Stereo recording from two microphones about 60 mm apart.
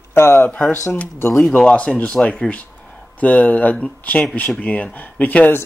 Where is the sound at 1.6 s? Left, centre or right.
Centre.